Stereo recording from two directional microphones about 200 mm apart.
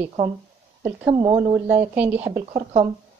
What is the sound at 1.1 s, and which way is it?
Speech, 25° right (ahead or behind).